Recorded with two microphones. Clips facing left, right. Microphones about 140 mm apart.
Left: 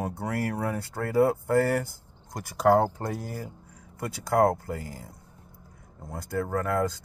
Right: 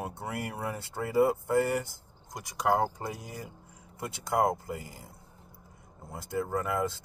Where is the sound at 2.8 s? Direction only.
5° right (ahead or behind).